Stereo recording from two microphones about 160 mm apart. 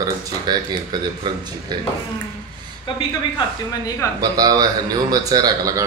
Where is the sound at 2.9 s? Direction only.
30° left (ahead or behind).